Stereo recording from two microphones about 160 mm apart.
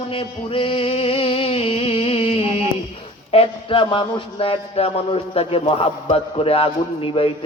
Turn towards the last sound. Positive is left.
turn(degrees=35)  # may be behind; listen again after turning